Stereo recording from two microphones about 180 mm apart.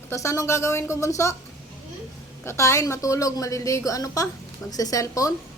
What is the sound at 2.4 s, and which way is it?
Speech, 15° left (ahead or behind).